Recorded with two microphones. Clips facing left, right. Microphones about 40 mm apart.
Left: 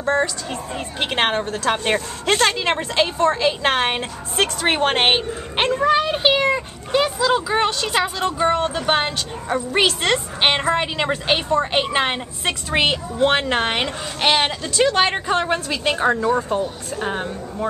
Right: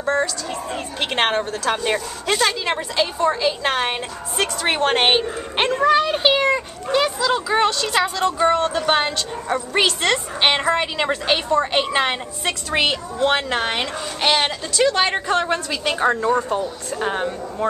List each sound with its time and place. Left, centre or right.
1.1 s a woman's voice: centre
1.9 s a child's voice: left; by 16.1 s centre
16.2 s a woman's voice: centre